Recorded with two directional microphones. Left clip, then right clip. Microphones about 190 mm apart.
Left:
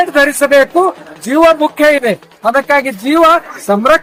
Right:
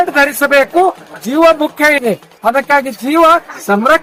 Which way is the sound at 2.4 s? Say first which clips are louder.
Left 1 dB; centre (ahead or behind).